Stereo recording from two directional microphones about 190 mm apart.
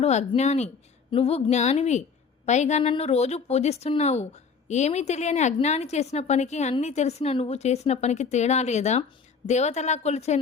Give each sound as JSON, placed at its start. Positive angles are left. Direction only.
{"t": 0.0, "sound": "a woman's voice", "side_deg": 35}